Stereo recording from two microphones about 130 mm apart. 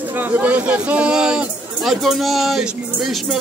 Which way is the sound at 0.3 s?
10° right (ahead or behind).